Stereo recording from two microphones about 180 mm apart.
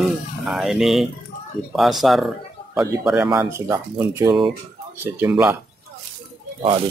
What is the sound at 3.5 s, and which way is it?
Speech, 20° right (ahead or behind).